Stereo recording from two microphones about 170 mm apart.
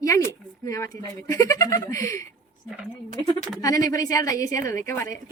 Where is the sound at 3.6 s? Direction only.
20° left (ahead or behind).